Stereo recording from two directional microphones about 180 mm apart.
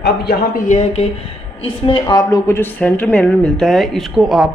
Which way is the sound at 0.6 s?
40° left (ahead or behind).